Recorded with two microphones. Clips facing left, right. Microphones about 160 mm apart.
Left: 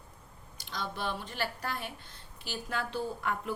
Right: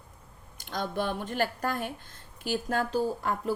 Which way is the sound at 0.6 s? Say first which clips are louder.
Right 6 dB; 50° right (ahead or behind).